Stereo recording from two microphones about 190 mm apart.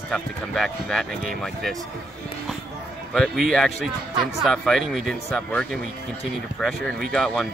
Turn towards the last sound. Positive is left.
turn(degrees=0)  # may be behind; listen again after turning